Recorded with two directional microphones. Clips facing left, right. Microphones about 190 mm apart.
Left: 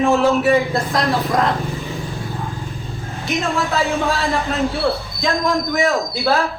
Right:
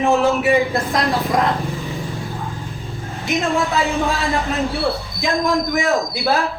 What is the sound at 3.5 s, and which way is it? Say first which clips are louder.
Speech: even; 15° right (ahead or behind).